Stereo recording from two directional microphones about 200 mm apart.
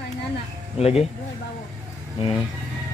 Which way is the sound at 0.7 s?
30° left (ahead or behind).